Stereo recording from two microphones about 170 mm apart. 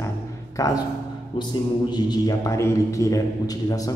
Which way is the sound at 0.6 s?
20° left (ahead or behind).